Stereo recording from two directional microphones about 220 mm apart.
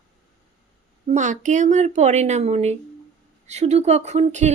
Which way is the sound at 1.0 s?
35° right (ahead or behind).